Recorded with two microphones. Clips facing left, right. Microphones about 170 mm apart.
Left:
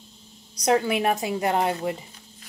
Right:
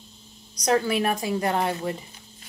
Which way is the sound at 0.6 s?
20° left (ahead or behind).